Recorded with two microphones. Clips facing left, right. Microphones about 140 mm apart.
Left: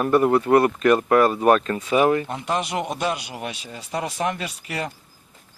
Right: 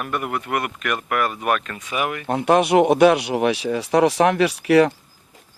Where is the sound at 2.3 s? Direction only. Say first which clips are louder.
Right 9 dB; 60° right (ahead or behind).